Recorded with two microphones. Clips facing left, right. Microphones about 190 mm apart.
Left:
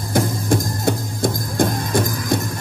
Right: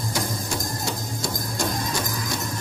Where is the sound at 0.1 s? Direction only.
55° left (ahead or behind).